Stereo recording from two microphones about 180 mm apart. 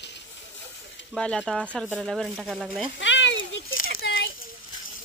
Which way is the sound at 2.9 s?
90° left.